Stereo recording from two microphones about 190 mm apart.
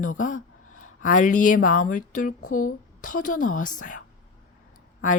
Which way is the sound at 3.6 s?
40° left (ahead or behind).